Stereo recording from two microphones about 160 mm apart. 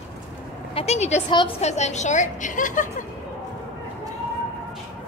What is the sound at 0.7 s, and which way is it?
A woman's voice, 40° left (ahead or behind).